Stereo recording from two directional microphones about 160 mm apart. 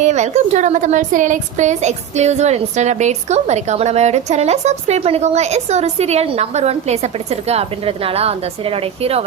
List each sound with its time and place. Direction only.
0.0 s a woman's voice: 45° right (ahead or behind)